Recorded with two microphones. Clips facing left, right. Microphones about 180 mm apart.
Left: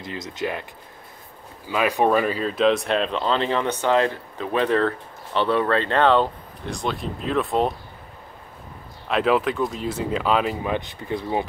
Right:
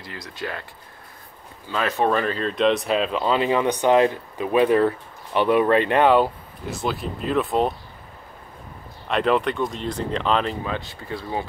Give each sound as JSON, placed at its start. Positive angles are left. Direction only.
{"t": 0.0, "sound": "speech", "side_deg": 20}
{"t": 1.7, "sound": "speech", "side_deg": 10}
{"t": 9.1, "sound": "speech", "side_deg": 0}